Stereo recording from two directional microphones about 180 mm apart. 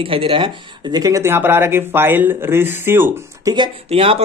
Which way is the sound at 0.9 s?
20° right (ahead or behind).